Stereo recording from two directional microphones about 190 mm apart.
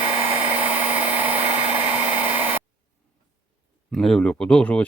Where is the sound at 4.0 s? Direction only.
5° left (ahead or behind).